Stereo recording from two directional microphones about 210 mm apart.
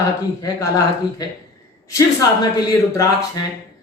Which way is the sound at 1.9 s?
15° left (ahead or behind).